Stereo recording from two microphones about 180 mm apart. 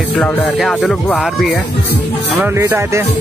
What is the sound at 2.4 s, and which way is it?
Speech, 15° right (ahead or behind).